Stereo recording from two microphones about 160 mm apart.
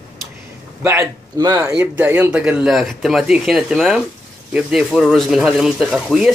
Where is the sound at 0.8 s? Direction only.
20° right (ahead or behind).